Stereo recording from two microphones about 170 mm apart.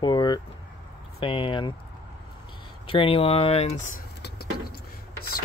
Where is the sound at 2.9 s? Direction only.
30° left (ahead or behind).